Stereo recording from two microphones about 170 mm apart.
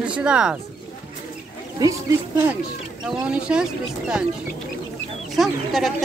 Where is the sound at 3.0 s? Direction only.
5° right (ahead or behind).